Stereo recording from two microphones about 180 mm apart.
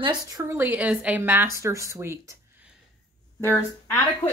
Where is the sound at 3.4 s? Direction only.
15° left (ahead or behind).